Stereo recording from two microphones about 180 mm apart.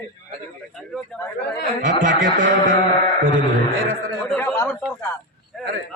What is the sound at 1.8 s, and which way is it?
Speech, 50° right (ahead or behind).